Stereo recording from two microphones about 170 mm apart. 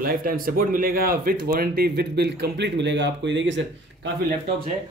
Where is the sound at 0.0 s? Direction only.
60° right (ahead or behind); by 4.1 s 90° right.